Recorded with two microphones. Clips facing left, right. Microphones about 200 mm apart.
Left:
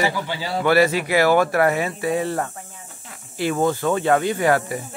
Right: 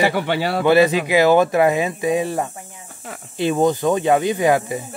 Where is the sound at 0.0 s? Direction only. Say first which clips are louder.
Right 5 dB; 65° right (ahead or behind).